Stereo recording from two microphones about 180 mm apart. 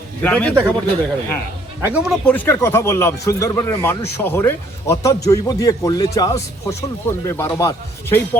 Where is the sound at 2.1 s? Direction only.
10° left (ahead or behind).